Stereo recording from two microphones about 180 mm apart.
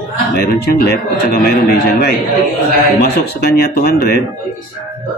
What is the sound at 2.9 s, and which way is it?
Speech, 60° left (ahead or behind).